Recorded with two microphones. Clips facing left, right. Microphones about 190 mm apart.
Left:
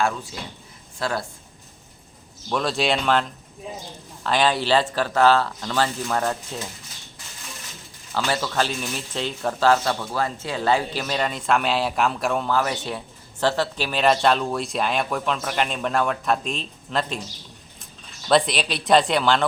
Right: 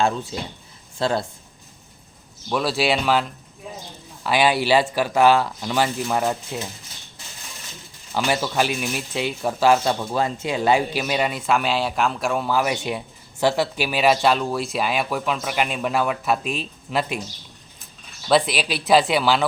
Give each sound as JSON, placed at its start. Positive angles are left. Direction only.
{"t": 0.0, "sound": "speech", "side_deg": -25}
{"t": 2.5, "sound": "speech", "side_deg": -5}
{"t": 8.1, "sound": "speech", "side_deg": -15}
{"t": 18.3, "sound": "speech", "side_deg": -5}